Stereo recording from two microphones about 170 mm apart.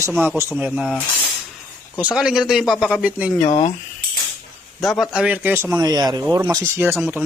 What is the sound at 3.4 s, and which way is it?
Speech, 40° left (ahead or behind).